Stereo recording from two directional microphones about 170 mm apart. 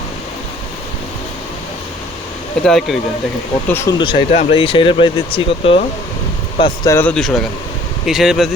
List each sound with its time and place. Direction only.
2.6 s speech: centre (ahead or behind)
3.7 s speech: 15° left (ahead or behind)
3.9 s speech: 30° left (ahead or behind)
6.9 s speech: 10° left (ahead or behind)